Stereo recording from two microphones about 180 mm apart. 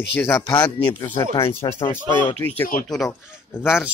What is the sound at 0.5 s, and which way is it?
Speech, 25° left (ahead or behind).